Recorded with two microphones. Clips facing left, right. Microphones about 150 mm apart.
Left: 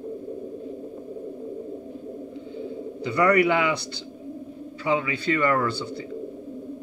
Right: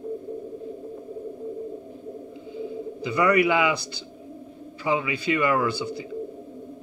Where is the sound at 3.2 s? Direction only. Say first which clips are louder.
Even; 10° right (ahead or behind).